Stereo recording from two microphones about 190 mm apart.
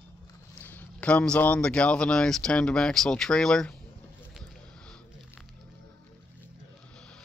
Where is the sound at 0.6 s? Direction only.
10° left (ahead or behind).